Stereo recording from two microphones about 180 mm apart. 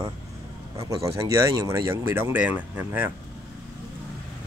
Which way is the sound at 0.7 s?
15° right (ahead or behind).